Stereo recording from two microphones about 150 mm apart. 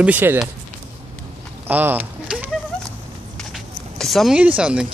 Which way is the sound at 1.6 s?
15° right (ahead or behind).